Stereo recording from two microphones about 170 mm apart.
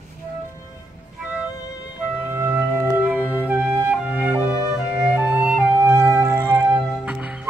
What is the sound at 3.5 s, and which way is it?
Flute, 10° right (ahead or behind).